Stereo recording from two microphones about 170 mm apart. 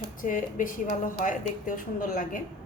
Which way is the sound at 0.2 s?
50° left (ahead or behind).